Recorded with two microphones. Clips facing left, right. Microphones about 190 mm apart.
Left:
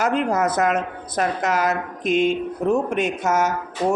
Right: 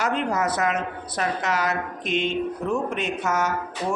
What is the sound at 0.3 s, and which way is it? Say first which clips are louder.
Speech: left 4 dB; 50° left (ahead or behind).